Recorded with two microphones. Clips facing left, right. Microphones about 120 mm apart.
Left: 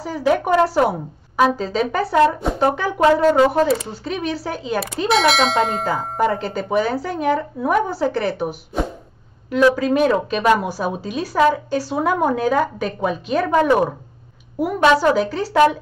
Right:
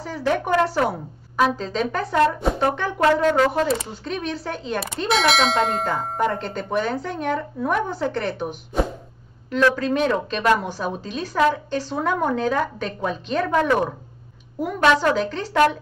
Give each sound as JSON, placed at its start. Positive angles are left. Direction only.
{"t": 0.0, "sound": "speech", "side_deg": 10}
{"t": 3.3, "sound": "speech", "side_deg": 15}
{"t": 3.6, "sound": "speech", "side_deg": 5}